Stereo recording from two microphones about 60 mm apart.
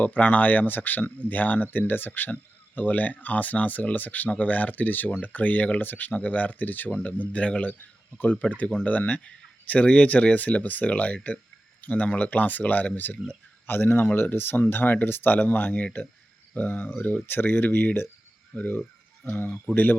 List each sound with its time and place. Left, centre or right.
0.0 s speech: left